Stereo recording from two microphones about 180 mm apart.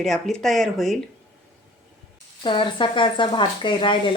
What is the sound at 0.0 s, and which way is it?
Speech, centre (ahead or behind).